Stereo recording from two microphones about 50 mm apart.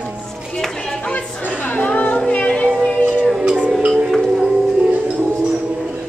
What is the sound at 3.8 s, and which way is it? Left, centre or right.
Music, right.